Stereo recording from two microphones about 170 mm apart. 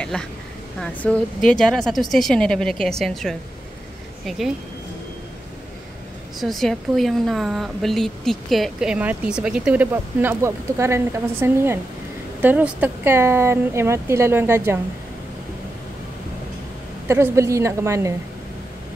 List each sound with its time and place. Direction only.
0.0 s speech: 5° left (ahead or behind)
6.4 s speech: centre (ahead or behind)
17.1 s speech: 15° right (ahead or behind)